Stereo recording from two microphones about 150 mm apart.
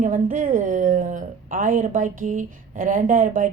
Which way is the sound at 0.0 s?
60° right (ahead or behind).